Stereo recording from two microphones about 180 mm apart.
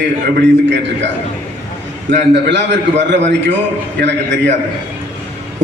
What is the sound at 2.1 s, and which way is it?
A man's voice, 80° right.